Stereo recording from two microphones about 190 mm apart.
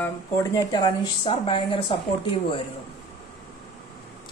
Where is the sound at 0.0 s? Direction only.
15° left (ahead or behind).